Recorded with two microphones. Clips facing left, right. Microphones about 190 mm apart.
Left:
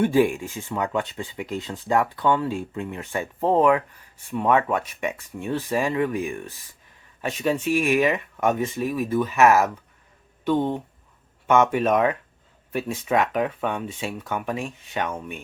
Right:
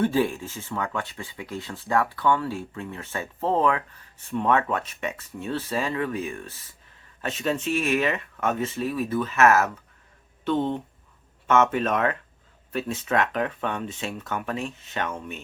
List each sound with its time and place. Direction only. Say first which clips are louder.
0.0 s speech: left 4 dB; 15° left (ahead or behind)